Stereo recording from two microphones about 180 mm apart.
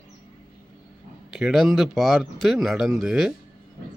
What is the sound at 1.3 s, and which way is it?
Speech, centre (ahead or behind).